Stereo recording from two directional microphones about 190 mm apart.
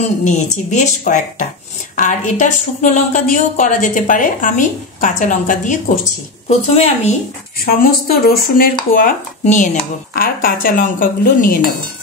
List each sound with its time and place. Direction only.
0.2 s a woman's voice: 40° left (ahead or behind)
7.5 s speech: 50° left (ahead or behind)